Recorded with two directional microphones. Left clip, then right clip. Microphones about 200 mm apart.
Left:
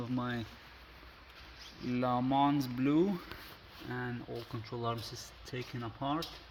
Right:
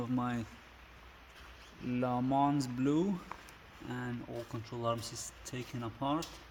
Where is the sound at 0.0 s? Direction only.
15° right (ahead or behind).